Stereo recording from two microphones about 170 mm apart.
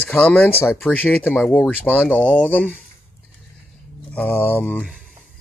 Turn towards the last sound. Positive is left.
turn(degrees=10)  # may be behind; listen again after turning